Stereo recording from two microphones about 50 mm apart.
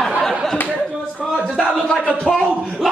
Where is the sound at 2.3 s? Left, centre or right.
Centre.